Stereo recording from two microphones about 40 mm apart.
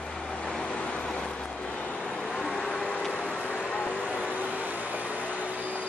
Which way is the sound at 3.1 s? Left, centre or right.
Left.